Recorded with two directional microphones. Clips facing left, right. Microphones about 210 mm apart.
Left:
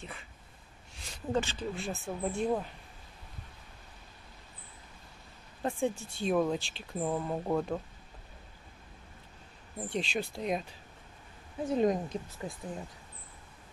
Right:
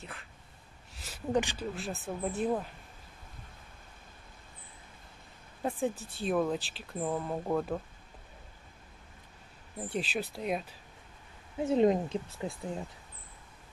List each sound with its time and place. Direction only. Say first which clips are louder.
0.0 s a sound: left 1 dB; centre (ahead or behind)
1.3 s speech: right 2 dB; 15° right (ahead or behind)
1.8 s speech: even; centre (ahead or behind)
5.6 s speech: left 1 dB; 5° right (ahead or behind)
9.8 s speech: even; 5° right (ahead or behind)
11.6 s speech: right 3 dB; 25° right (ahead or behind)